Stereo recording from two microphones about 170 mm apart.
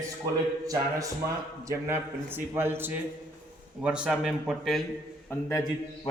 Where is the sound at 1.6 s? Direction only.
15° right (ahead or behind); by 4.8 s centre (ahead or behind).